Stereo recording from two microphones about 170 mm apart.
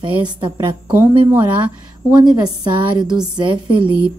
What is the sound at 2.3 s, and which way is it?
A woman's voice, 25° right (ahead or behind).